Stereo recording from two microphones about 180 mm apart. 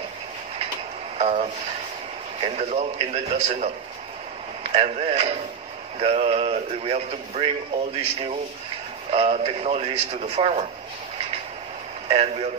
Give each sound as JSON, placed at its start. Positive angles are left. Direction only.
{"t": 1.1, "sound": "speech", "side_deg": -40}
{"t": 4.7, "sound": "speech", "side_deg": -35}
{"t": 12.1, "sound": "speech", "side_deg": -35}